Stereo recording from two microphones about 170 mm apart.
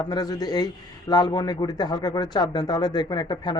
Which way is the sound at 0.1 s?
25° left (ahead or behind).